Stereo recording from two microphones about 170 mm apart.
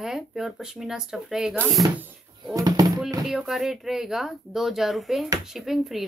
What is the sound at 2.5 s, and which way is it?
Speech, 20° right (ahead or behind).